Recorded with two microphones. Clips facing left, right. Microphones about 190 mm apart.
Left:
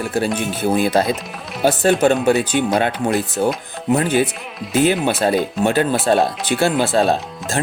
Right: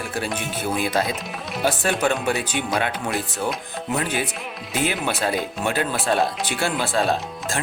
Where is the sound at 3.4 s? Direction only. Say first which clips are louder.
Left 7 dB; 30° left (ahead or behind).